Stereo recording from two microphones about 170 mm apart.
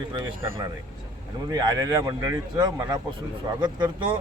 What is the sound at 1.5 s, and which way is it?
Speech, 20° right (ahead or behind).